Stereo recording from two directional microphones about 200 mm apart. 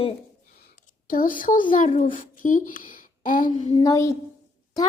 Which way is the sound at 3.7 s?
20° left (ahead or behind).